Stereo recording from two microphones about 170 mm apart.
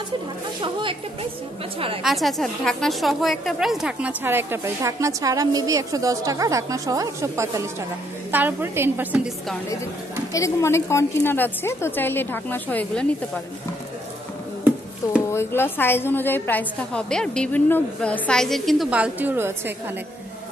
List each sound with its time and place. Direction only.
0.6 s speech: 30° right (ahead or behind)
2.0 s a woman's voice: centre (ahead or behind)
10.3 s a woman's voice: 15° left (ahead or behind)
15.3 s a woman's voice: 15° left (ahead or behind); by 19.7 s 15° right (ahead or behind)